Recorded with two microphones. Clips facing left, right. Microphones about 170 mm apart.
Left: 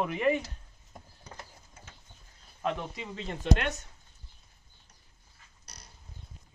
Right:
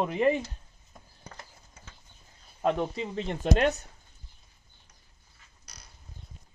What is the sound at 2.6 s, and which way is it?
Speech, 40° right (ahead or behind).